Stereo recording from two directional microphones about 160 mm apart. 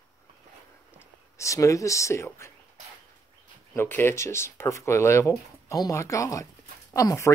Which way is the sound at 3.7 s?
15° left (ahead or behind).